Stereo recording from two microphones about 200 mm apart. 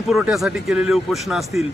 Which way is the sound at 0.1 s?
Centre (ahead or behind).